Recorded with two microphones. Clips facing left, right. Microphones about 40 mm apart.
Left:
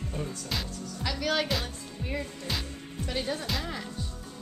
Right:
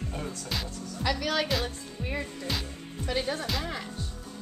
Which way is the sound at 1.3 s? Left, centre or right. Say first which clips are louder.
Left 2 dB; centre.